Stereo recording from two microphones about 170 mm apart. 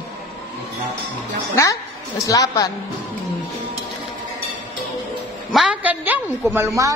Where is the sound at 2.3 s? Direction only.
20° left (ahead or behind).